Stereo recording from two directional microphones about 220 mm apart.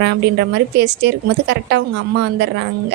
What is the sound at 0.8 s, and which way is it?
A woman's voice, 50° right (ahead or behind).